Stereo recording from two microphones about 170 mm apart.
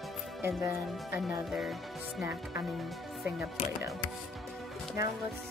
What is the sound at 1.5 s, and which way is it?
Speech, centre (ahead or behind).